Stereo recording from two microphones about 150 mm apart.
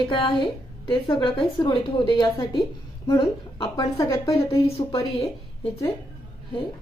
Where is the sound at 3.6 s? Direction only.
25° left (ahead or behind).